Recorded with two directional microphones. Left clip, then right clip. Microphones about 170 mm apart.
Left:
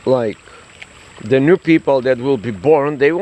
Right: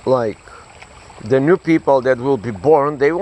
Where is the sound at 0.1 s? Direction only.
45° left (ahead or behind).